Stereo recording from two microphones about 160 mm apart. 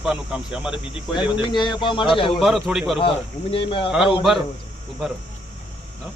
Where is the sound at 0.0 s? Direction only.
5° right (ahead or behind).